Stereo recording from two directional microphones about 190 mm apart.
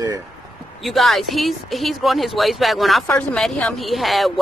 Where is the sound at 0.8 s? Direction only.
Centre (ahead or behind).